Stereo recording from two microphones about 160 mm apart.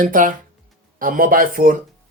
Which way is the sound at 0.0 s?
55° right (ahead or behind).